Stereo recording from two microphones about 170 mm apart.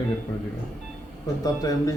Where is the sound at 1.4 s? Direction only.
20° left (ahead or behind).